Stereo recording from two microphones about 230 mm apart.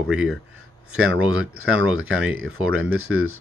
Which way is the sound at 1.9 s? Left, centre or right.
Right.